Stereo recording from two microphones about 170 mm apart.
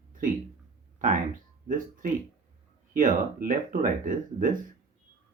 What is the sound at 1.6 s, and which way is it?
Speech, 55° right (ahead or behind).